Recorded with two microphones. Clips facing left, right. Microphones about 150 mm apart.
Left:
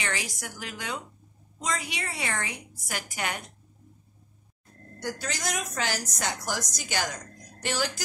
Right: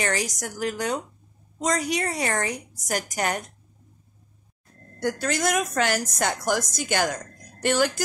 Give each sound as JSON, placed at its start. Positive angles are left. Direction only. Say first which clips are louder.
{"t": 0.0, "sound": "a woman's voice", "louder": "right 7 dB", "side_deg": -40}
{"t": 5.0, "sound": "a woman's voice", "louder": "right 8 dB", "side_deg": -55}